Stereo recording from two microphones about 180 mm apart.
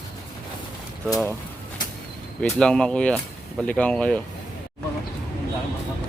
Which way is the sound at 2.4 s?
5° left (ahead or behind).